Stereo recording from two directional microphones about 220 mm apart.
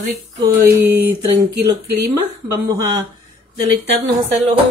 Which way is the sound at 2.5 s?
20° right (ahead or behind).